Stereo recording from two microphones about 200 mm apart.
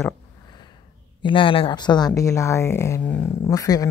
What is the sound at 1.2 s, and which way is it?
Speech, 25° left (ahead or behind).